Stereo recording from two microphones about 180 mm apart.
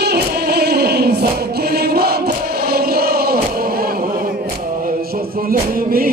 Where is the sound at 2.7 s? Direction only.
60° right (ahead or behind).